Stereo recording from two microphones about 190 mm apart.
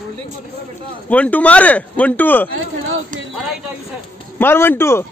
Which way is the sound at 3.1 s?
45° right (ahead or behind).